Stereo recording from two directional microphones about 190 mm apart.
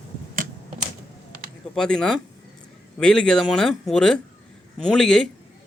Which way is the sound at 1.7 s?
5° left (ahead or behind).